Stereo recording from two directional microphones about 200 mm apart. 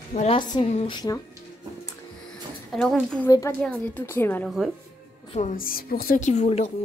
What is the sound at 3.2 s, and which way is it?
A woman's voice, 15° left (ahead or behind).